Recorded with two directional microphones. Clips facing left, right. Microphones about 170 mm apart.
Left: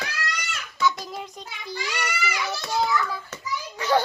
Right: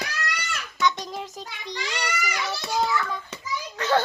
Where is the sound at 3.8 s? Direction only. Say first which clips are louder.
Left 1 dB; 10° left (ahead or behind).